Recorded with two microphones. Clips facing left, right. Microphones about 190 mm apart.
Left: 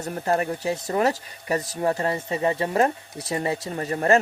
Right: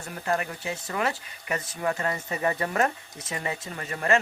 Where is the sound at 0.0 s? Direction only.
35° left (ahead or behind).